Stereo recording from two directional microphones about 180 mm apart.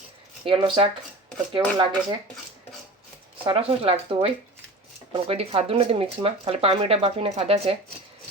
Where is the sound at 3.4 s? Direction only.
35° right (ahead or behind).